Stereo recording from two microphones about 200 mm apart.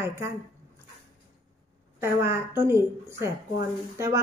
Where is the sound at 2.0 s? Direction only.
10° right (ahead or behind).